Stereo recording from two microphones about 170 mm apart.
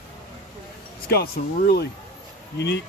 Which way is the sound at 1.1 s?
65° left (ahead or behind).